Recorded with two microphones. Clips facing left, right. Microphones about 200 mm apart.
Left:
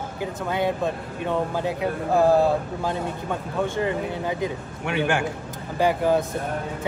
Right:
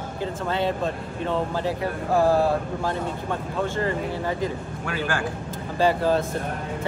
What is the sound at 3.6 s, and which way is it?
Speech, 15° left (ahead or behind).